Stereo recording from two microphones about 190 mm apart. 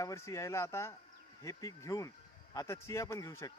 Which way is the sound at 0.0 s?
15° left (ahead or behind).